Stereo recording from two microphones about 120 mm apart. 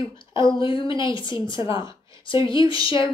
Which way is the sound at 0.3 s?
40° left (ahead or behind).